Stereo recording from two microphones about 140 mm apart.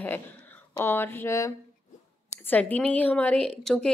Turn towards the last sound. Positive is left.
turn(degrees=5)  # may be behind; listen again after turning